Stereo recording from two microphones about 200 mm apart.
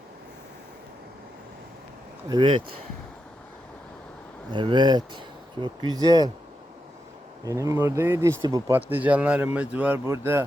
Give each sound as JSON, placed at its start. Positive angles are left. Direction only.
{"t": 2.3, "sound": "speech", "side_deg": -25}
{"t": 4.5, "sound": "speech", "side_deg": -20}
{"t": 7.4, "sound": "speech", "side_deg": -15}